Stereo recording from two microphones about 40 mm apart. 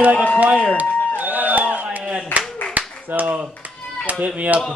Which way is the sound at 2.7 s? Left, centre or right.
Right.